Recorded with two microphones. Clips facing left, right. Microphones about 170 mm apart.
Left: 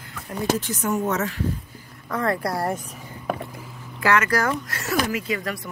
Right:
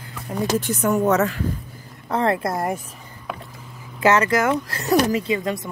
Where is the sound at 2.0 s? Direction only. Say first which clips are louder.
Right 3 dB; 25° right (ahead or behind).